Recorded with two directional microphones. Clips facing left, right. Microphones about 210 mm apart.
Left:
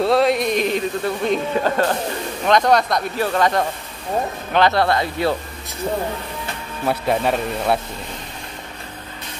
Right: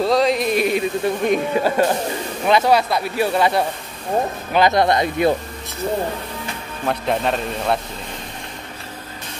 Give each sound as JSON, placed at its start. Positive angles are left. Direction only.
{"t": 0.0, "sound": "speech", "side_deg": 0}
{"t": 6.9, "sound": "speech", "side_deg": 5}